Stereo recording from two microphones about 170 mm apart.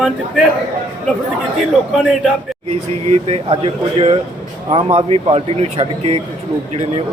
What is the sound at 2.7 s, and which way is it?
Speech, 35° right (ahead or behind).